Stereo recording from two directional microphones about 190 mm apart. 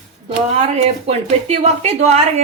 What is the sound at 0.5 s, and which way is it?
A woman's voice, 35° right (ahead or behind).